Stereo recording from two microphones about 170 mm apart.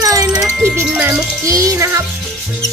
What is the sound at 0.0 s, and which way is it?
Music, 20° right (ahead or behind).